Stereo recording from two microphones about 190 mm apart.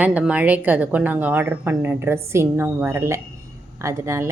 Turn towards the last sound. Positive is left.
turn(degrees=-15)  # may be behind; listen again after turning